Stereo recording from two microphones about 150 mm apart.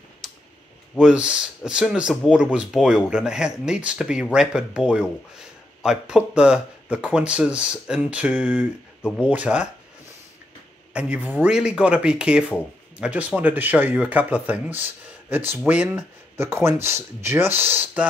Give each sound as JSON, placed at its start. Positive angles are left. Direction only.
{"t": 0.2, "sound": "a sound", "side_deg": 0}
{"t": 0.9, "sound": "speech", "side_deg": -5}
{"t": 10.9, "sound": "speech", "side_deg": -10}